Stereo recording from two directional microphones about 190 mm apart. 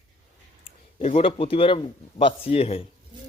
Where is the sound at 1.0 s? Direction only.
35° left (ahead or behind).